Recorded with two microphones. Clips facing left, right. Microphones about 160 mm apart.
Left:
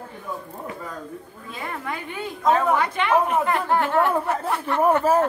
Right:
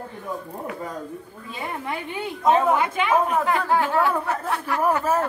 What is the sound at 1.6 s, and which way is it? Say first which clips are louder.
A woman's voice: right 1 dB; 10° right (ahead or behind).